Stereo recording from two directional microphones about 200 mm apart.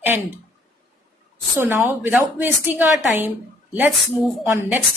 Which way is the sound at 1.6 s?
10° right (ahead or behind).